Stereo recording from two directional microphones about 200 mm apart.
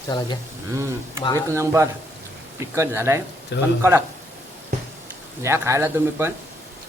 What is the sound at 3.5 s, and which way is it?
Speech, 60° left (ahead or behind).